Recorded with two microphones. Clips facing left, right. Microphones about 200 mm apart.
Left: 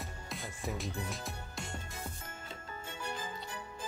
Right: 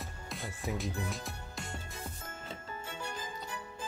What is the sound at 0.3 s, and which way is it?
Music, centre (ahead or behind).